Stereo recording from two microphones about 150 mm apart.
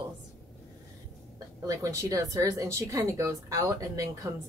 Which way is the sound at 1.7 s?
20° right (ahead or behind).